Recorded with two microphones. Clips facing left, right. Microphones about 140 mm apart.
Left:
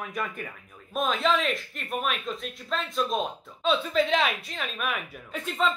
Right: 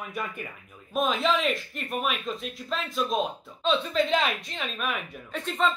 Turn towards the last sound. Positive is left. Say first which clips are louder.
# even
turn(degrees=0)  # may be behind; listen again after turning